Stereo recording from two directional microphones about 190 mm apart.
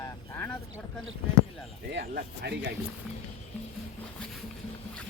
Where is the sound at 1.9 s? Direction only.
55° right (ahead or behind).